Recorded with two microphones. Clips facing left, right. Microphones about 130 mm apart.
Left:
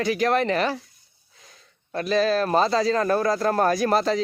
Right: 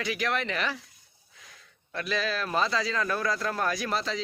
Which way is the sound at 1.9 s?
40° left (ahead or behind).